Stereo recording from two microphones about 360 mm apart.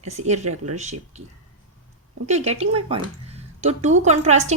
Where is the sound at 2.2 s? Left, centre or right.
Centre.